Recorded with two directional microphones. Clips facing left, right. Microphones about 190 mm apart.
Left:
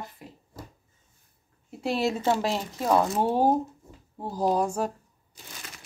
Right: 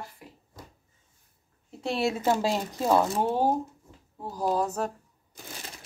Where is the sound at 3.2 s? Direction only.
10° left (ahead or behind).